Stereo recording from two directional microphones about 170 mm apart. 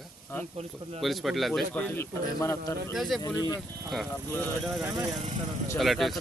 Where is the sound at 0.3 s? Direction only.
15° left (ahead or behind).